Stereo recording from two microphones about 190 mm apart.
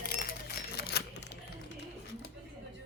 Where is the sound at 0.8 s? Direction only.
55° left (ahead or behind).